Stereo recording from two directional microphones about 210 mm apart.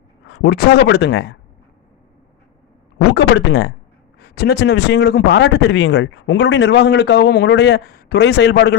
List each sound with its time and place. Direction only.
0.3 s speech: 50° left (ahead or behind)
3.2 s speech: 55° left (ahead or behind)